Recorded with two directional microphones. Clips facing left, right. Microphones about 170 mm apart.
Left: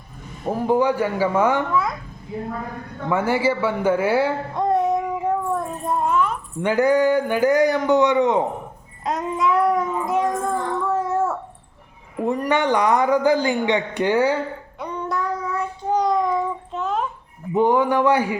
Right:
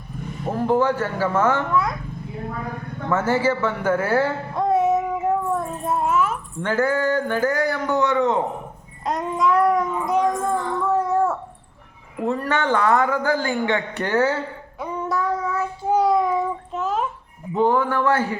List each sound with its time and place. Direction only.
0.7 s a man's voice: 15° left (ahead or behind)
1.7 s a child's voice: centre (ahead or behind)
3.1 s a man's voice: 15° left (ahead or behind)
4.5 s child singing: centre (ahead or behind)
6.6 s a man's voice: 15° left (ahead or behind)
9.0 s speech: centre (ahead or behind)
12.2 s a man's voice: 15° left (ahead or behind)
14.8 s child singing: 5° right (ahead or behind)
17.5 s a man's voice: 15° left (ahead or behind)